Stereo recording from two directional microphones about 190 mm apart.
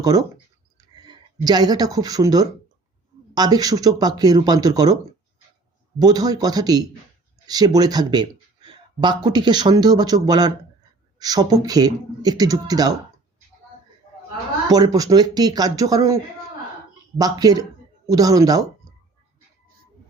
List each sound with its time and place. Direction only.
0.0 s speech: 20° right (ahead or behind)
6.0 s speech: 20° right (ahead or behind)
14.7 s speech: 20° right (ahead or behind)